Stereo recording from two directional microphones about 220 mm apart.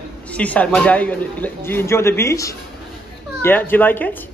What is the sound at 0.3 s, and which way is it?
A man's voice, 5° left (ahead or behind).